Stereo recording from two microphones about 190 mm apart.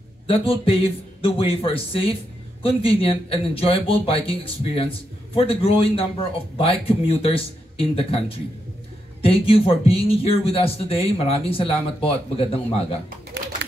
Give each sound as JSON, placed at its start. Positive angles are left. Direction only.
{"t": 0.3, "sound": "speech", "side_deg": 30}